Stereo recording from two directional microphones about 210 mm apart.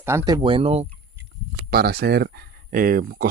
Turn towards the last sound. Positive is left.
turn(degrees=-45)  # may be behind; listen again after turning